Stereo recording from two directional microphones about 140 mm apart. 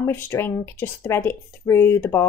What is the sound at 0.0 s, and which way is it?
A woman's voice, 15° left (ahead or behind).